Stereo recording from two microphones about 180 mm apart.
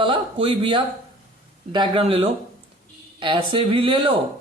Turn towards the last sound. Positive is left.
turn(degrees=-25)  # may be behind; listen again after turning